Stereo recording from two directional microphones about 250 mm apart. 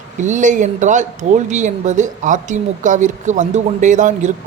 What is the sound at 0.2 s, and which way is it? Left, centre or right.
A man's voice, right.